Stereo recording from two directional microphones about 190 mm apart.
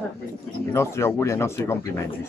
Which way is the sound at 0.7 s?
15° left (ahead or behind).